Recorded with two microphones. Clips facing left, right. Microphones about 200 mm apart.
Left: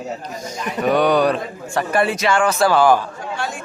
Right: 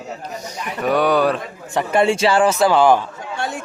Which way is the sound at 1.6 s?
20° right (ahead or behind).